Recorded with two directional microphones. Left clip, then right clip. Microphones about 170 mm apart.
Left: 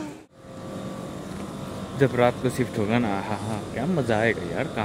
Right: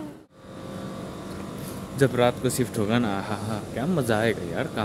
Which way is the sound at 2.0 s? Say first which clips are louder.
Left 1 dB; 10° right (ahead or behind).